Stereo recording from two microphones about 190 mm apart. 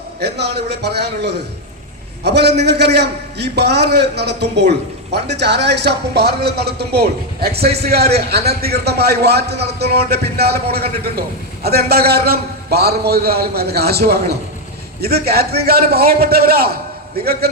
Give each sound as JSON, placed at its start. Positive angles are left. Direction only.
{"t": 0.2, "sound": "a man's voice", "side_deg": -60}